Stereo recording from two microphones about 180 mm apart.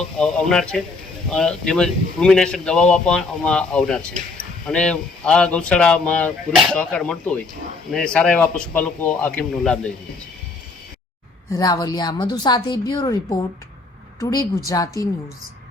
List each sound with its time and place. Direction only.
0.2 s speech: 5° left (ahead or behind)
11.5 s a woman's voice: 20° left (ahead or behind)
14.2 s a woman's voice: 20° left (ahead or behind)